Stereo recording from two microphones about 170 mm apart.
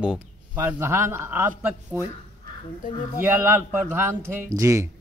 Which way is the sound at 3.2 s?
10° right (ahead or behind).